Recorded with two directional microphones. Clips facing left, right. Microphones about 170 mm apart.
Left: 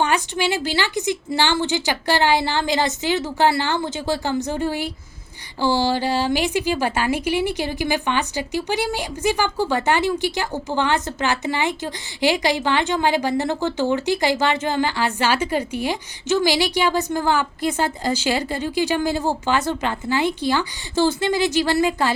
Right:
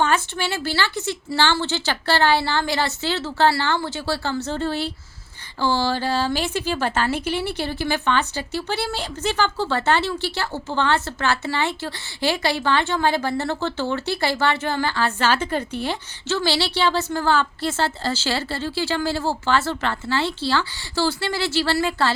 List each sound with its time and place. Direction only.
0.0 s speech: 15° left (ahead or behind)